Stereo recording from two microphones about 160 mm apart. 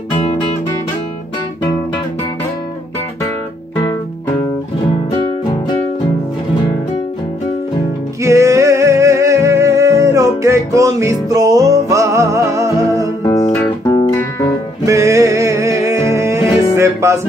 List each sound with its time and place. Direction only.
0.1 s guitar: 30° left (ahead or behind)
8.2 s music: 20° right (ahead or behind)
13.2 s music: 20° left (ahead or behind)
14.9 s music: 20° right (ahead or behind)